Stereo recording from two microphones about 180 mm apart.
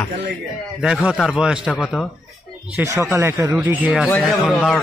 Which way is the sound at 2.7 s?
15° right (ahead or behind).